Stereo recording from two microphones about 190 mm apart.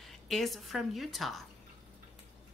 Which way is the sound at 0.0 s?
Centre (ahead or behind).